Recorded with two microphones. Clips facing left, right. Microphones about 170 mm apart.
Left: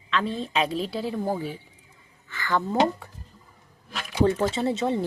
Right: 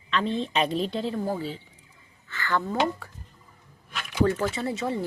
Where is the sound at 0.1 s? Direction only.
Centre (ahead or behind).